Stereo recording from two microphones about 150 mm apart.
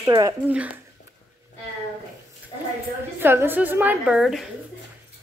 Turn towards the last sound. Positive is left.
turn(degrees=0)  # may be behind; listen again after turning